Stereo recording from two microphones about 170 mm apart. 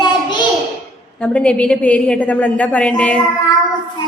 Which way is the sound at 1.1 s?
10° left (ahead or behind).